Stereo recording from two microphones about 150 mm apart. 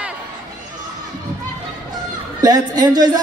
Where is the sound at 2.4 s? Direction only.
25° right (ahead or behind).